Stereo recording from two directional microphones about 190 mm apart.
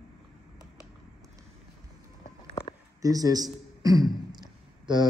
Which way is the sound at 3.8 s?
20° right (ahead or behind).